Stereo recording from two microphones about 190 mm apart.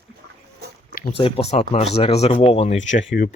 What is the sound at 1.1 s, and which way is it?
Speech, 30° left (ahead or behind).